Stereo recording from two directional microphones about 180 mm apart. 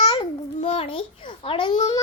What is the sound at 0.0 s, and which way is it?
Babbling, 30° left (ahead or behind).